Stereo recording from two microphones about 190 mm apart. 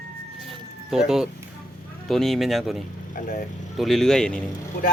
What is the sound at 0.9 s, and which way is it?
Speech, centre (ahead or behind).